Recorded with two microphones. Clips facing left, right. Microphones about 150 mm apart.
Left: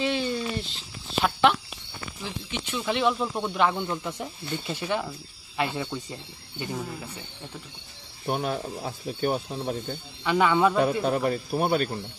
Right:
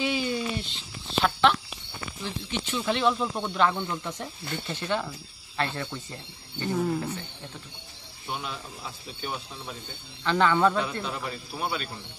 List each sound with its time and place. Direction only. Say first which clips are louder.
0.0 s a sound: left 1 dB; 5° right (ahead or behind)
1.2 s a sound: left 1 dB; 10° left (ahead or behind)
2.2 s speech: right 2 dB; 10° left (ahead or behind)
8.3 s speech: left 8 dB; 50° left (ahead or behind)
10.2 s speech: left 1 dB; 10° left (ahead or behind)
11.1 s speech: left 10 dB; 50° left (ahead or behind)